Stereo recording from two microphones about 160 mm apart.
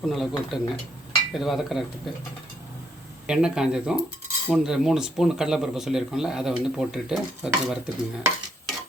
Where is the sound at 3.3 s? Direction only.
5° right (ahead or behind).